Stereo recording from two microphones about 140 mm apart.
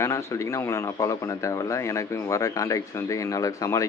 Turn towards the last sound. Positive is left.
turn(degrees=25)  # may be behind; listen again after turning